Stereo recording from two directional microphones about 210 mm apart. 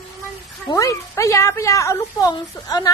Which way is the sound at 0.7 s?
15° left (ahead or behind).